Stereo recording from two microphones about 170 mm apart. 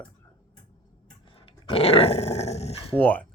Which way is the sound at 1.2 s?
35° left (ahead or behind).